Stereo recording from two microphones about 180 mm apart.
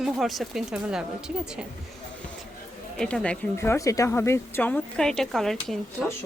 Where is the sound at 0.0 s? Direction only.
Centre (ahead or behind).